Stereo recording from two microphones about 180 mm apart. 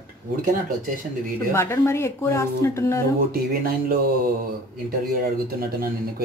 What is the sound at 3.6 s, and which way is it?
Speech, 55° right (ahead or behind).